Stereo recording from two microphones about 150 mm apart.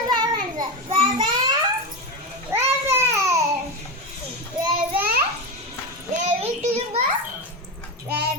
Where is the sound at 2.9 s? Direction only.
20° right (ahead or behind).